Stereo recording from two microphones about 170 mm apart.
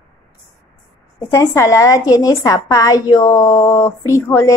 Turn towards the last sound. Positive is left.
turn(degrees=15)  # may be behind; listen again after turning